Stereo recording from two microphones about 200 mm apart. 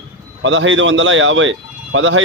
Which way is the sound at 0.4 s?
70° right (ahead or behind).